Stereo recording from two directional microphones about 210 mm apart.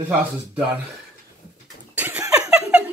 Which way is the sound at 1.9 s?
10° right (ahead or behind).